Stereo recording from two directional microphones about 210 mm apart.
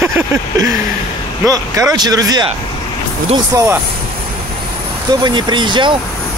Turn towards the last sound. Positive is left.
turn(degrees=-20)  # may be behind; listen again after turning